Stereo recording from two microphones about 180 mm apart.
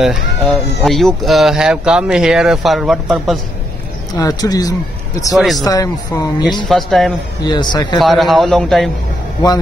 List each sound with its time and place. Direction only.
0.0 s speech: centre (ahead or behind)
4.1 s speech: 20° left (ahead or behind)
5.3 s speech: centre (ahead or behind)
5.6 s speech: 20° left (ahead or behind)
6.7 s speech: centre (ahead or behind)
7.4 s speech: 25° left (ahead or behind)
8.0 s speech: centre (ahead or behind)